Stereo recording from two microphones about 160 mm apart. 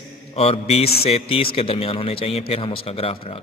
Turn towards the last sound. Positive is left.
turn(degrees=35)  # may be behind; listen again after turning